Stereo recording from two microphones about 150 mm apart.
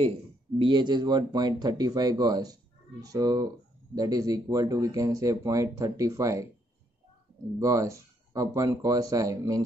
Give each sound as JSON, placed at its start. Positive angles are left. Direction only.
{"t": 0.6, "sound": "speech", "side_deg": -30}
{"t": 7.5, "sound": "speech", "side_deg": -20}